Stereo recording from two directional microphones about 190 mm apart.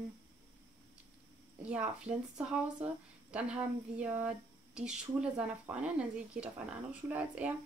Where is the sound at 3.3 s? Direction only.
5° right (ahead or behind).